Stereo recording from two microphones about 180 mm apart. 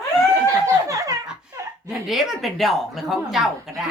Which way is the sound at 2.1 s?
Centre (ahead or behind).